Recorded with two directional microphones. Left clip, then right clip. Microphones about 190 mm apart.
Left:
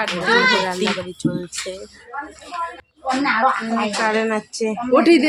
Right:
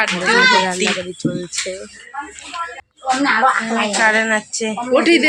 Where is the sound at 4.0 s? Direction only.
Centre (ahead or behind).